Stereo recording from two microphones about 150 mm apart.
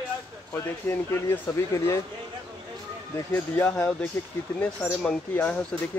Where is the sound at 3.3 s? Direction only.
15° left (ahead or behind).